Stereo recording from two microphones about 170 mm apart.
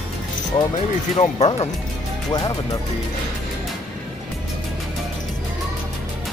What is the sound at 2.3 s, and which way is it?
Speech, 20° left (ahead or behind).